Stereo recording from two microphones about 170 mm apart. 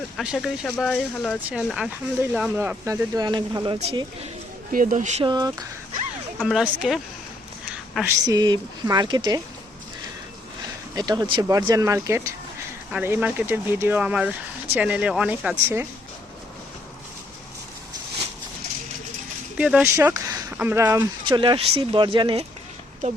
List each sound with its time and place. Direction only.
0.2 s speech: centre (ahead or behind); by 3.8 s 25° right (ahead or behind)
3.8 s speech: 35° right (ahead or behind)
4.7 s speech: 50° right (ahead or behind)
5.2 s speech: 25° right (ahead or behind)
6.4 s speech: centre (ahead or behind)
8.0 s speech: 20° right (ahead or behind)
10.9 s speech: 25° right (ahead or behind)
19.5 s speech: 5° right (ahead or behind)
19.8 s speech: 15° right (ahead or behind)
21.2 s speech: 30° right (ahead or behind)